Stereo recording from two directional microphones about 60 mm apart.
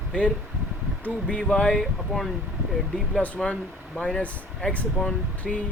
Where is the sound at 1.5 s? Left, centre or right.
Centre.